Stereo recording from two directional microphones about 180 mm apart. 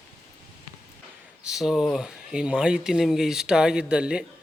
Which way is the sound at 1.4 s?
5° right (ahead or behind).